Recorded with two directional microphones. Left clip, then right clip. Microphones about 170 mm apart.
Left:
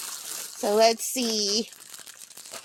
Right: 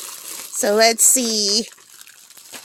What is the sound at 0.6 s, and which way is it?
Speech, 50° right (ahead or behind).